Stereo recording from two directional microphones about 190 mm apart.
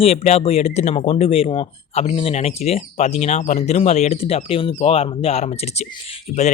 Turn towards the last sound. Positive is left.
turn(degrees=40)  # may be behind; listen again after turning